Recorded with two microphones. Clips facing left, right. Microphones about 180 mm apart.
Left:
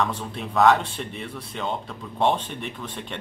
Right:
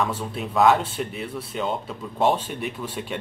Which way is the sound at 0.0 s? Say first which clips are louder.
Right 1 dB; 5° right (ahead or behind).